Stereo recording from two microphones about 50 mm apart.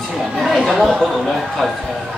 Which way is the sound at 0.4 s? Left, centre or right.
Centre.